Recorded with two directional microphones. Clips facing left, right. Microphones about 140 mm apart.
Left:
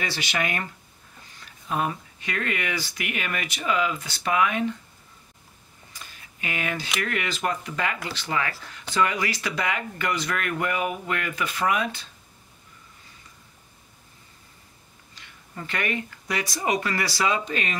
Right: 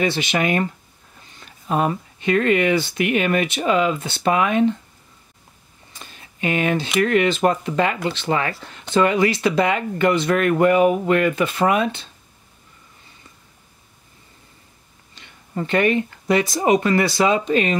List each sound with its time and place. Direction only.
0.0 s speech: 25° right (ahead or behind)
5.9 s a sound: 25° right (ahead or behind)
7.0 s speech: 25° right (ahead or behind)
15.1 s speech: 25° right (ahead or behind)